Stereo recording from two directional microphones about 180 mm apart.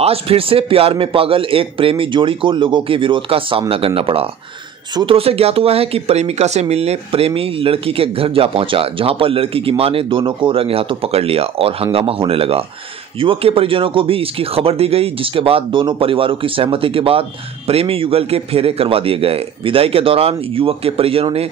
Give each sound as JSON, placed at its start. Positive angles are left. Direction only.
{"t": 0.0, "sound": "speech", "side_deg": -35}